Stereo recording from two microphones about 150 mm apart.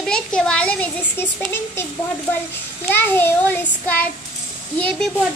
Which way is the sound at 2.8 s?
15° left (ahead or behind).